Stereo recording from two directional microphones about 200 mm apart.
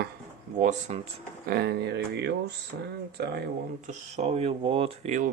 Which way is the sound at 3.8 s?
35° right (ahead or behind).